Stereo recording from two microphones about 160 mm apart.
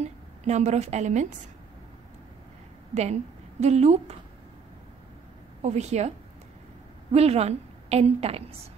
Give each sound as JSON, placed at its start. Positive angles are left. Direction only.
{"t": 0.0, "sound": "a woman's voice", "side_deg": -45}
{"t": 2.9, "sound": "a woman's voice", "side_deg": -45}
{"t": 5.6, "sound": "a woman's voice", "side_deg": -45}